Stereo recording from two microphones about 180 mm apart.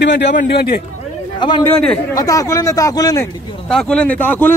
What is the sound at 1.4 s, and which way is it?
A man's voice, 25° left (ahead or behind).